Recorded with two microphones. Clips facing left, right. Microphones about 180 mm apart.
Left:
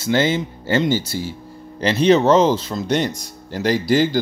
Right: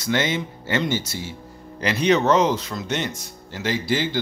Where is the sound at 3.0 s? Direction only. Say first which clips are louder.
Left 6 dB; 40° left (ahead or behind).